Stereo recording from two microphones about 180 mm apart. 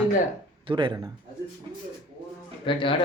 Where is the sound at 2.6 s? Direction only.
30° left (ahead or behind).